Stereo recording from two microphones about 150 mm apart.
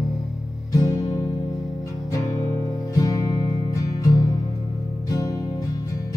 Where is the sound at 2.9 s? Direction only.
25° left (ahead or behind).